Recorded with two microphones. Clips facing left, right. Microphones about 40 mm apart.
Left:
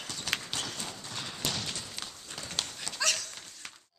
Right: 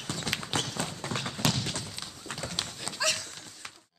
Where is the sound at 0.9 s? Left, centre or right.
Right.